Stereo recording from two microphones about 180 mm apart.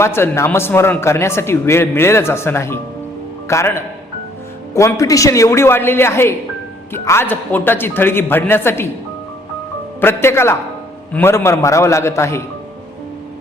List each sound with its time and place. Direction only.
0.0 s a man's voice: 15° left (ahead or behind)
10.0 s a man's voice: 15° left (ahead or behind)